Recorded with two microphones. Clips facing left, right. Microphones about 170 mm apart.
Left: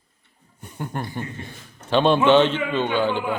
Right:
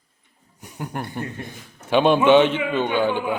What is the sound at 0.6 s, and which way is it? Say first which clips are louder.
A man's voice: even; 10° right (ahead or behind).